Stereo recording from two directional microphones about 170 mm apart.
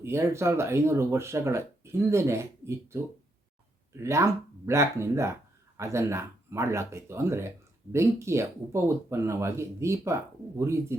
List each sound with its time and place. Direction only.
0.0 s speech: 15° right (ahead or behind)